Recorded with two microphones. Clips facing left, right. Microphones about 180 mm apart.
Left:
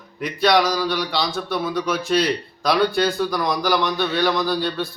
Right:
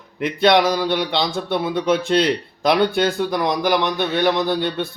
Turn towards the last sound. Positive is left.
turn(degrees=-20)  # may be behind; listen again after turning